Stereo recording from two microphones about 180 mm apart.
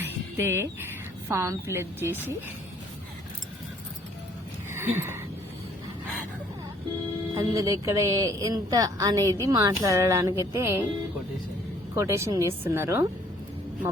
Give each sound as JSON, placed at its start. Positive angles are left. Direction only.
{"t": 0.0, "sound": "speech", "side_deg": -15}
{"t": 4.8, "sound": "a sound", "side_deg": -15}
{"t": 7.3, "sound": "a woman's voice", "side_deg": -20}
{"t": 9.2, "sound": "a woman's voice", "side_deg": 15}
{"t": 9.5, "sound": "a woman's voice", "side_deg": -20}
{"t": 11.9, "sound": "a woman's voice", "side_deg": -15}